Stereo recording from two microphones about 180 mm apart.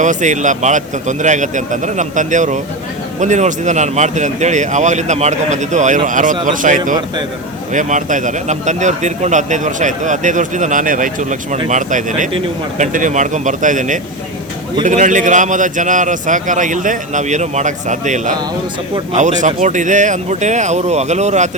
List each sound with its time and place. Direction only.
0.0 s speech: 45° right (ahead or behind)